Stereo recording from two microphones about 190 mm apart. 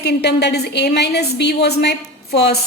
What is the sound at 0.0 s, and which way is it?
Speech, 60° left (ahead or behind).